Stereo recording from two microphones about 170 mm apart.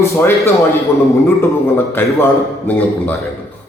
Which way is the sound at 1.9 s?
10° left (ahead or behind).